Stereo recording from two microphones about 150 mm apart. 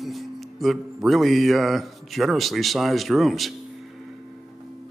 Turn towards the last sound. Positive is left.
turn(degrees=0)  # may be behind; listen again after turning